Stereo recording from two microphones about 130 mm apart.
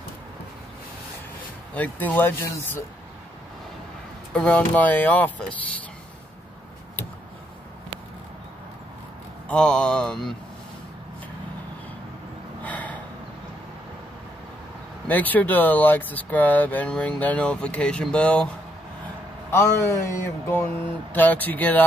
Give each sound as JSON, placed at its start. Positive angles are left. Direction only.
{"t": 1.7, "sound": "speech", "side_deg": 10}
{"t": 4.3, "sound": "speech", "side_deg": 10}
{"t": 9.5, "sound": "speech", "side_deg": 5}
{"t": 12.6, "sound": "gasp", "side_deg": 10}
{"t": 15.0, "sound": "speech", "side_deg": 10}
{"t": 19.5, "sound": "speech", "side_deg": 20}